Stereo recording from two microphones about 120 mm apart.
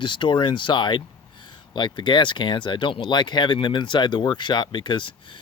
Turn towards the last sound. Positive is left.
turn(degrees=40)  # may be behind; listen again after turning